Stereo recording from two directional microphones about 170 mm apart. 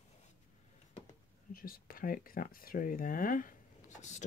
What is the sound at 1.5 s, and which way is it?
Speech, 55° left (ahead or behind).